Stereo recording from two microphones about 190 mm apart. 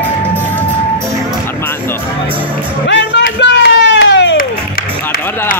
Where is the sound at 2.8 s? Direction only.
70° left (ahead or behind).